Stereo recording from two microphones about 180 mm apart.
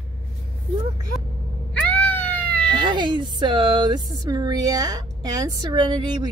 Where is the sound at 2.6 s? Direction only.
25° right (ahead or behind).